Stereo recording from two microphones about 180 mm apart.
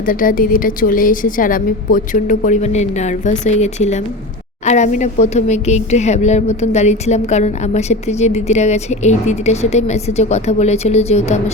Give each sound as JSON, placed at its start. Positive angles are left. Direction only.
{"t": 0.0, "sound": "a woman's voice", "side_deg": 50}